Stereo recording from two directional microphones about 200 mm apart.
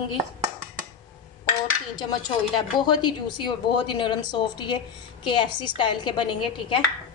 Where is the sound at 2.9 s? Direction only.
20° left (ahead or behind).